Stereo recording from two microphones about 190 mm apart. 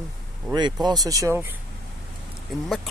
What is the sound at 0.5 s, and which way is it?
Speech, 25° right (ahead or behind).